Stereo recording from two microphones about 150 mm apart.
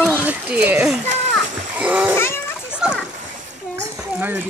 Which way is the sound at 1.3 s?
10° right (ahead or behind).